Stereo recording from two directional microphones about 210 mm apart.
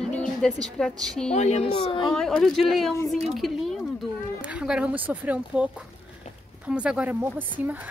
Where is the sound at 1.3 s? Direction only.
30° left (ahead or behind).